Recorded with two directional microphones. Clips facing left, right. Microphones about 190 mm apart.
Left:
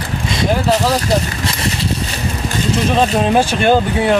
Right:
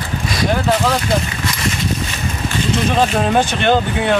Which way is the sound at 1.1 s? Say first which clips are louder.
Left 2 dB; 30° left (ahead or behind).